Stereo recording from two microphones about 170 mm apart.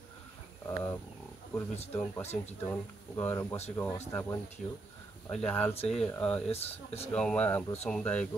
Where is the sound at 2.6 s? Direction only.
15° left (ahead or behind).